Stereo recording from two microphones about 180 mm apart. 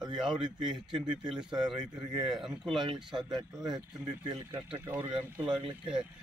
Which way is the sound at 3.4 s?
25° right (ahead or behind).